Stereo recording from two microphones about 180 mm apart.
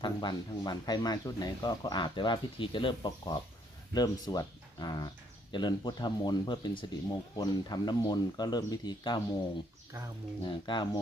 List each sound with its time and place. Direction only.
0.0 s speech: 25° left (ahead or behind)
10.4 s speech: 25° left (ahead or behind)